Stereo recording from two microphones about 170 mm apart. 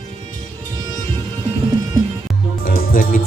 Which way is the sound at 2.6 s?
60° left (ahead or behind).